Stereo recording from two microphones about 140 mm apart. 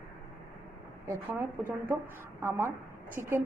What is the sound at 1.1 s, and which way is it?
A woman's voice, 20° right (ahead or behind).